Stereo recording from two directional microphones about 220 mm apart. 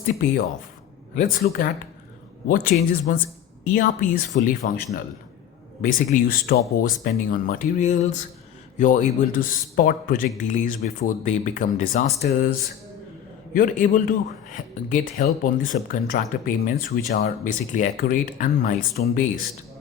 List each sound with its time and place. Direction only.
0.0 s speech: 40° left (ahead or behind)
2.7 s speech: 45° left (ahead or behind)
13.5 s speech: 40° left (ahead or behind)